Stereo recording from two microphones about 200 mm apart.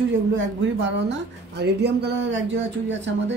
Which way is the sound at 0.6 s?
60° right (ahead or behind).